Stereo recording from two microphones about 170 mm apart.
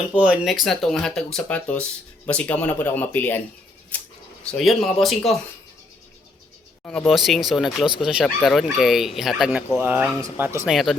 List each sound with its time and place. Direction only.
0.2 s speech: 5° right (ahead or behind)
4.5 s speech: centre (ahead or behind)
6.8 s speech: 10° left (ahead or behind); by 10.7 s 15° right (ahead or behind)
10.7 s speech: centre (ahead or behind)